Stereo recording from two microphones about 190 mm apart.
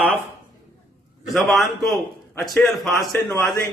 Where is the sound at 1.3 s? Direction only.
Centre (ahead or behind).